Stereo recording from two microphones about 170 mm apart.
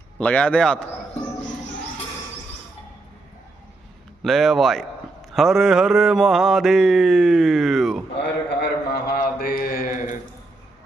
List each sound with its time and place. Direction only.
0.2 s mantra: 5° left (ahead or behind)
4.2 s mantra: centre (ahead or behind)
8.2 s mantra: 75° left (ahead or behind); by 9.9 s 55° left (ahead or behind)